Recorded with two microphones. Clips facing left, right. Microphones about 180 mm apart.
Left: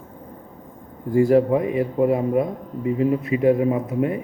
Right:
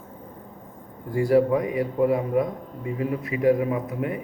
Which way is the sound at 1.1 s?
25° left (ahead or behind).